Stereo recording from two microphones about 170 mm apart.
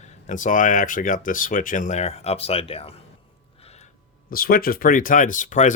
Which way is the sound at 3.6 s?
40° left (ahead or behind).